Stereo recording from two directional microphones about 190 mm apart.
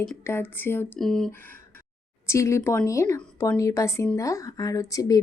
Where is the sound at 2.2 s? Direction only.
15° left (ahead or behind).